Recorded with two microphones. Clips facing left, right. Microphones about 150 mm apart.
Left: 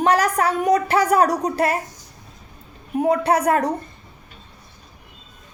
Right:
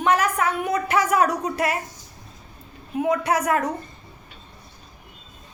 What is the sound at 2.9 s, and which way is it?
Speech, 35° left (ahead or behind).